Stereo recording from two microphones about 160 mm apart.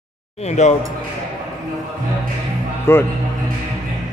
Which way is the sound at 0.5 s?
45° left (ahead or behind).